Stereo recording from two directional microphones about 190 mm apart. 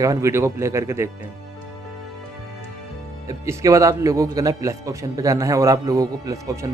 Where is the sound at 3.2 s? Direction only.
15° right (ahead or behind).